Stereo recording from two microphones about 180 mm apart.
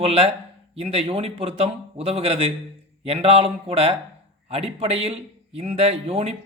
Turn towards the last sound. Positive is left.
turn(degrees=-35)  # may be behind; listen again after turning